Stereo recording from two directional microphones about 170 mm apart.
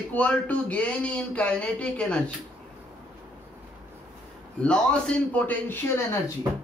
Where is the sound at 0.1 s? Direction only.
10° left (ahead or behind).